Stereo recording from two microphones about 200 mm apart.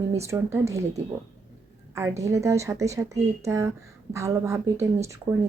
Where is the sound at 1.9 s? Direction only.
15° right (ahead or behind).